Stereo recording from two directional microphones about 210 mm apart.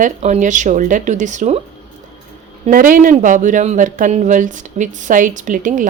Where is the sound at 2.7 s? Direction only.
40° right (ahead or behind).